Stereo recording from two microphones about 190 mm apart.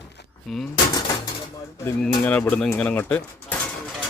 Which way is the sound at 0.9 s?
20° left (ahead or behind).